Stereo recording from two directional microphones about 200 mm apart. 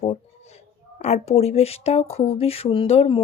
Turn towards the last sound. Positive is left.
turn(degrees=30)  # may be behind; listen again after turning